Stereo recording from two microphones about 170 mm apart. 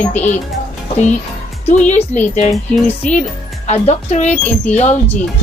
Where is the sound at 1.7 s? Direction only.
40° left (ahead or behind).